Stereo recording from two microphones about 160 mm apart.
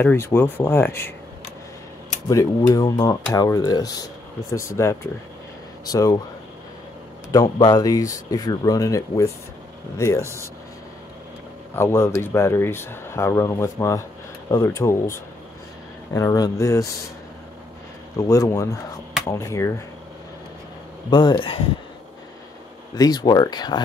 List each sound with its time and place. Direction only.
0.0 s speech: 15° left (ahead or behind)
2.2 s speech: 20° left (ahead or behind)
7.4 s speech: 30° left (ahead or behind)
11.7 s speech: 15° left (ahead or behind)
16.1 s speech: 20° left (ahead or behind)
18.2 s speech: 20° left (ahead or behind)
21.1 s speech: 30° left (ahead or behind)
22.9 s speech: 25° left (ahead or behind)